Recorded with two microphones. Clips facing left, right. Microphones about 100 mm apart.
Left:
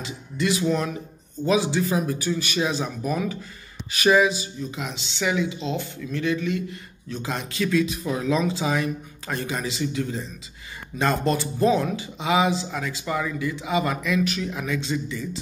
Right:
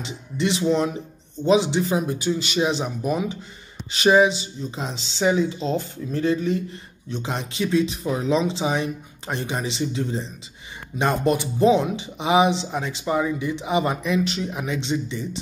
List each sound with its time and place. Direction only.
0.0 s speech: 25° right (ahead or behind)